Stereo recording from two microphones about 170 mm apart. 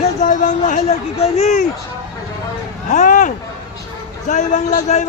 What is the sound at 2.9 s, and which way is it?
A man's voice, 45° left (ahead or behind).